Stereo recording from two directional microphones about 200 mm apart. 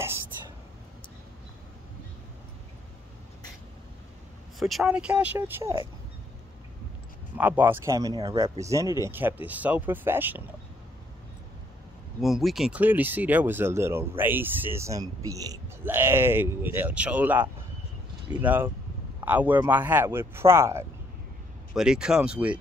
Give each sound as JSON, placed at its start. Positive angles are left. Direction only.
{"t": 4.6, "sound": "speech", "side_deg": 0}
{"t": 7.3, "sound": "speech", "side_deg": -10}
{"t": 12.2, "sound": "speech", "side_deg": 0}